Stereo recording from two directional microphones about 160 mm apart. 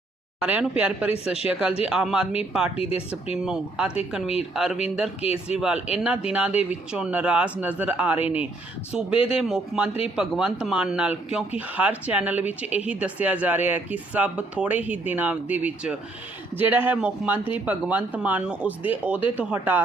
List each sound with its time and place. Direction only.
0.3 s speech: 5° right (ahead or behind)
2.7 s speech: 40° left (ahead or behind)
3.3 s speech: 5° right (ahead or behind)